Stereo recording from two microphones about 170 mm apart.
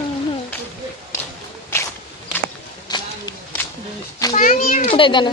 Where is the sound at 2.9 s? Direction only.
25° left (ahead or behind).